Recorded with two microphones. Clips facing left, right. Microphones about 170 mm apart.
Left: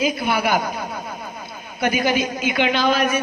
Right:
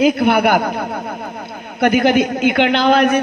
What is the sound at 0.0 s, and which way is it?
A man's voice, 65° right (ahead or behind).